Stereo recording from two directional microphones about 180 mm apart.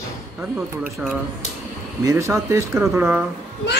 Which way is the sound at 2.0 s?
15° right (ahead or behind).